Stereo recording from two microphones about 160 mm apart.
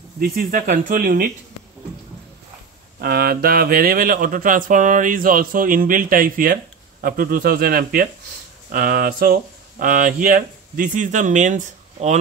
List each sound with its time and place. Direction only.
0.2 s speech: 60° right (ahead or behind)
3.0 s speech: 70° right (ahead or behind); by 12.2 s 50° right (ahead or behind)